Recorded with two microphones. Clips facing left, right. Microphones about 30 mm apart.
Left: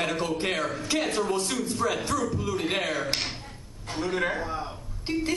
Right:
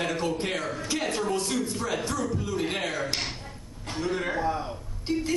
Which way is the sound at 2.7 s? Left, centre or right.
Left.